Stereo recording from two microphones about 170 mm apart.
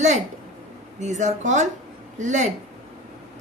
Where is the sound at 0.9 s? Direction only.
45° right (ahead or behind).